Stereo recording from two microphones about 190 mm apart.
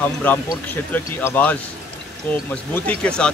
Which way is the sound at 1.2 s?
10° left (ahead or behind).